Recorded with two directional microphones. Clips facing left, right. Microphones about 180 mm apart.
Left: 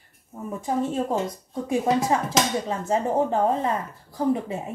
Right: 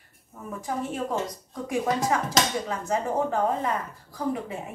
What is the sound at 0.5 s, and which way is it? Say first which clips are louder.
A woman's voice: left 5 dB; 25° left (ahead or behind).